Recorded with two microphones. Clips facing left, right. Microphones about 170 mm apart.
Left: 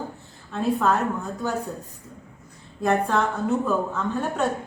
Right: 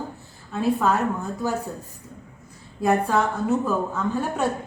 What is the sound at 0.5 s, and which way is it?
A woman's voice, centre (ahead or behind).